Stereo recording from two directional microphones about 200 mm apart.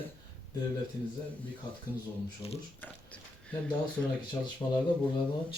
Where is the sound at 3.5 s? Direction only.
5° left (ahead or behind).